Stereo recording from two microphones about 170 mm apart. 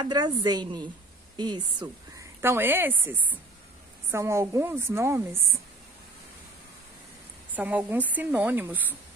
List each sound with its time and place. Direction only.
0.0 s a woman's voice: 25° right (ahead or behind)
2.4 s a woman's voice: 15° right (ahead or behind)
7.5 s a woman's voice: 10° right (ahead or behind)